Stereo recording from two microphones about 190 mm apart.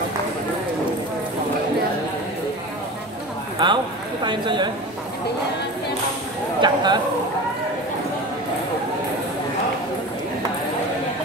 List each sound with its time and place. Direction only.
3.5 s speech: 25° right (ahead or behind)
6.6 s speech: 25° right (ahead or behind)